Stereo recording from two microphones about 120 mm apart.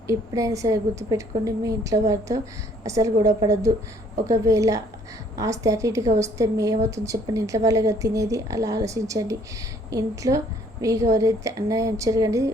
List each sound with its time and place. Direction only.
0.1 s a woman's voice: 25° right (ahead or behind)